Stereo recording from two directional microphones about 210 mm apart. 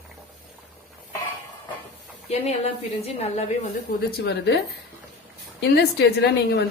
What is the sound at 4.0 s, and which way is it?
Speech, 50° left (ahead or behind).